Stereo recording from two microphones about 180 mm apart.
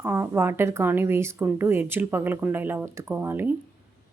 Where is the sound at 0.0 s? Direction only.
10° right (ahead or behind).